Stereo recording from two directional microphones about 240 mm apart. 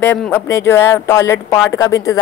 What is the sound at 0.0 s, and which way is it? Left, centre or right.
A woman's voice, centre.